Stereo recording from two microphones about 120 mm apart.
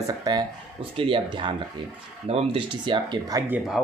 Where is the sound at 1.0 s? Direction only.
45° right (ahead or behind).